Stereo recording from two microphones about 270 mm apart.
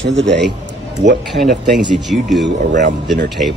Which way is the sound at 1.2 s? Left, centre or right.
Centre.